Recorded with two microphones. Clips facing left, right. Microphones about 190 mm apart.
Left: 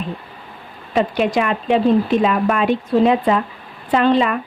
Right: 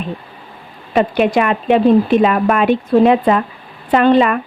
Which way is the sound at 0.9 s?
60° right (ahead or behind).